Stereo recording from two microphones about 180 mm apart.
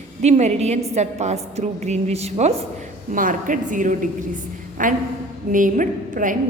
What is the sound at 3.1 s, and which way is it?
A woman's voice, 50° right (ahead or behind).